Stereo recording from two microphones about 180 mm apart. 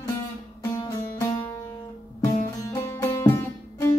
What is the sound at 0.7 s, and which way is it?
Music, 20° left (ahead or behind).